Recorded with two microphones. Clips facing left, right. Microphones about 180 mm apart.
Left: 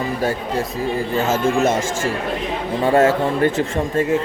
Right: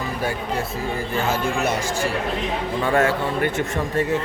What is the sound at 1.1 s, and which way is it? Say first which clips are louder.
Speech: left 5 dB; 40° left (ahead or behind).